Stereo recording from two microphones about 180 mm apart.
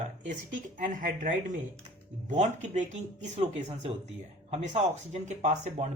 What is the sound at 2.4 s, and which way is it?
Speech, 40° right (ahead or behind).